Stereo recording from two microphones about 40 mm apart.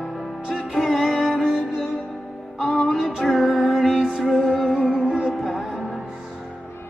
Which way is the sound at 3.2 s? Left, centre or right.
Centre.